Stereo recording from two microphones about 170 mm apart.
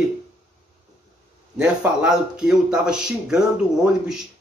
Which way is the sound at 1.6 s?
5° right (ahead or behind).